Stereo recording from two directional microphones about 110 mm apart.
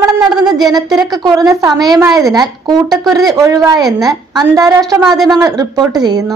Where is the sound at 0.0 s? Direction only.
35° right (ahead or behind).